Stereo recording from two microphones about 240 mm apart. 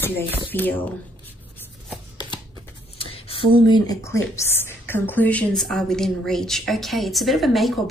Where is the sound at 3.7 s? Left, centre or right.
Centre.